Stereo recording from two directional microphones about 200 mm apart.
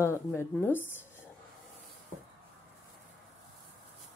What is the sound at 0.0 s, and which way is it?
Speech, 15° left (ahead or behind).